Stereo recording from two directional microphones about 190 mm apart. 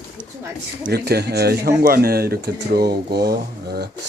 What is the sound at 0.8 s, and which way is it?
Speech, 55° right (ahead or behind).